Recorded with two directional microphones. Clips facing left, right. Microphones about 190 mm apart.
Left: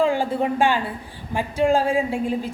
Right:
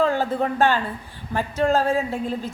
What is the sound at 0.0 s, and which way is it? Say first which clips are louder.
A woman's voice: left 1 dB; 10° left (ahead or behind).